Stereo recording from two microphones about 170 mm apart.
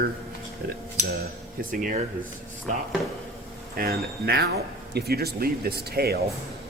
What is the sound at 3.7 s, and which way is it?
Speech, 65° right (ahead or behind).